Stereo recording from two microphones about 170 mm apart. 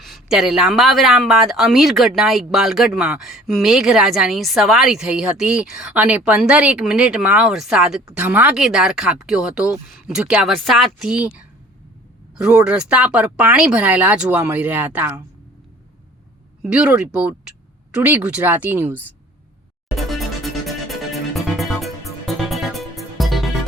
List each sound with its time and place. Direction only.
0.0 s speech: centre (ahead or behind)
16.6 s speech: 5° right (ahead or behind)
20.0 s music: centre (ahead or behind)